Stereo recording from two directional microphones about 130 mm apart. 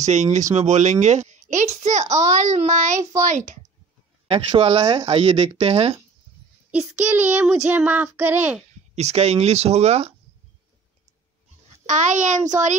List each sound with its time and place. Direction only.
0.0 s a woman's voice: 65° right (ahead or behind)
4.5 s speech: 50° right (ahead or behind)
6.7 s child singing: 10° right (ahead or behind)
8.9 s a woman's voice: 55° right (ahead or behind)
11.8 s a child's voice: 70° right (ahead or behind)